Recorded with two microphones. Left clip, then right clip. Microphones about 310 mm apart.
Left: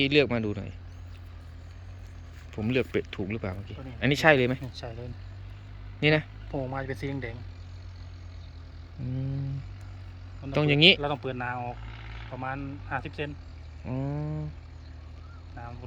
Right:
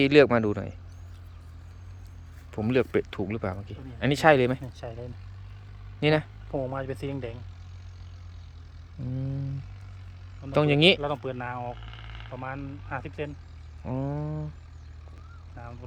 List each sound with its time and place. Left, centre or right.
0.0 s speech: centre
2.5 s speech: centre
6.5 s speech: centre
9.0 s speech: centre
10.4 s speech: centre
13.8 s a sound: centre
15.6 s speech: centre